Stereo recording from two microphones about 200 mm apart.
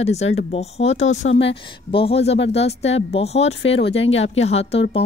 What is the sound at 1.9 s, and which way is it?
A woman's voice, 30° left (ahead or behind).